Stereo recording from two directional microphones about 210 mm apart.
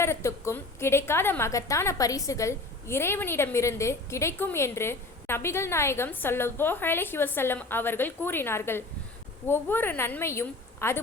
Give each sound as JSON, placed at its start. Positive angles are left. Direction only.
{"t": 0.0, "sound": "a woman's voice", "side_deg": 15}